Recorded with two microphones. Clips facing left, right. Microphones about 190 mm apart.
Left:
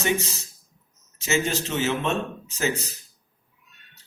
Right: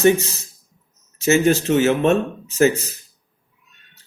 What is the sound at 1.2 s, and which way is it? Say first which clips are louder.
Speech: right 9 dB; 55° right (ahead or behind).